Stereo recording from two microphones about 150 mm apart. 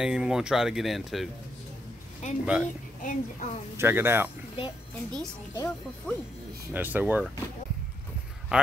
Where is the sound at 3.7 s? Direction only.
15° right (ahead or behind).